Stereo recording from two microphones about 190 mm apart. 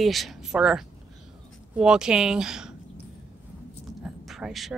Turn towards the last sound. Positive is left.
turn(degrees=0)  # may be behind; listen again after turning